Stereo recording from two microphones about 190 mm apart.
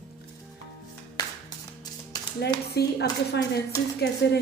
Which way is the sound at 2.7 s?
60° left (ahead or behind).